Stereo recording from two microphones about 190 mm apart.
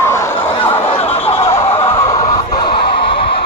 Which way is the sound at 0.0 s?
15° left (ahead or behind).